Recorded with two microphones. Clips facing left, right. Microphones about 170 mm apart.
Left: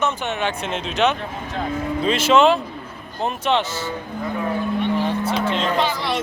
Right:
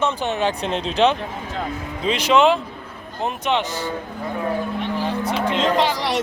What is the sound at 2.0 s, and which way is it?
Speech, 15° right (ahead or behind).